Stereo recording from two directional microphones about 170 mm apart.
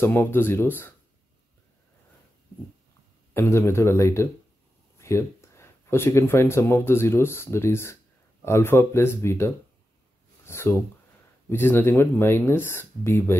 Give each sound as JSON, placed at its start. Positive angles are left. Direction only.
{"t": 0.0, "sound": "speech", "side_deg": 15}
{"t": 3.3, "sound": "speech", "side_deg": 15}
{"t": 10.4, "sound": "a sound", "side_deg": 15}
{"t": 11.4, "sound": "speech", "side_deg": 15}